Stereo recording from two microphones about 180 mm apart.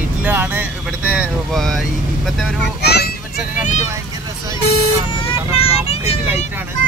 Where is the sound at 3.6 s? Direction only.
40° left (ahead or behind).